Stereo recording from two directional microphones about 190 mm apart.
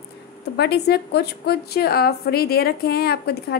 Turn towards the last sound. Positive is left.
turn(degrees=55)  # may be behind; listen again after turning